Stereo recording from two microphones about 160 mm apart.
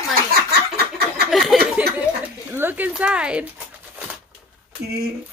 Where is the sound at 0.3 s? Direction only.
80° right.